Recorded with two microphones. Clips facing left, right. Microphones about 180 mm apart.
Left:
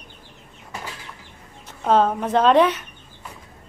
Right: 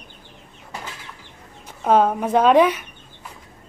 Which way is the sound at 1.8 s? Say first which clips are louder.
Right 1 dB; 10° right (ahead or behind).